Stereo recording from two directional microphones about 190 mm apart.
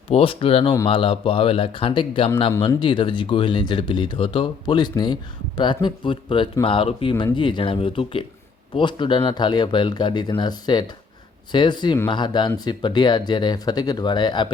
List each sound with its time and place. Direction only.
0.1 s speech: 30° left (ahead or behind)